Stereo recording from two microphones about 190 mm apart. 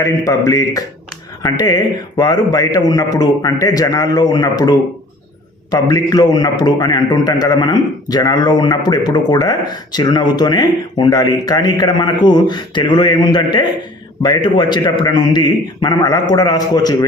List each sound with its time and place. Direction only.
0.0 s a man's voice: 15° left (ahead or behind)
5.7 s a man's voice: 20° left (ahead or behind)